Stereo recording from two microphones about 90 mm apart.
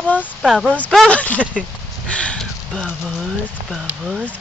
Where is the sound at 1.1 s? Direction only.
15° left (ahead or behind).